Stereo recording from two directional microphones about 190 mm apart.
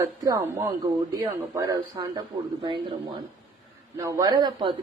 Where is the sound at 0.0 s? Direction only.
20° right (ahead or behind).